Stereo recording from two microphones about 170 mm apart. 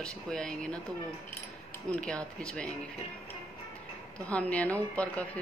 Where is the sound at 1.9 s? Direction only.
5° left (ahead or behind).